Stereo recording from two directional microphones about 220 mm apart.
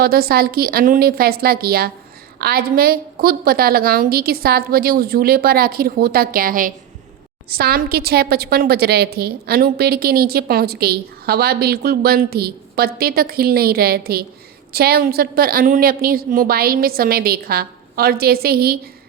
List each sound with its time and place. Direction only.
0.0 s a woman's voice: 45° right (ahead or behind)